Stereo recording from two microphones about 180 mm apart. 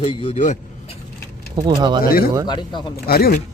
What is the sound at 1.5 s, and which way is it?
Speech, 25° right (ahead or behind).